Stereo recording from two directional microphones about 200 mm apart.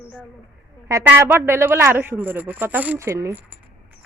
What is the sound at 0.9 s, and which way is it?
Speech, 15° right (ahead or behind).